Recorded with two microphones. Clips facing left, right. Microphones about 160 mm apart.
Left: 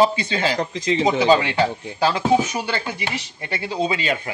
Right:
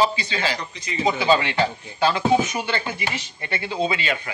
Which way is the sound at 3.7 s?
40° left (ahead or behind).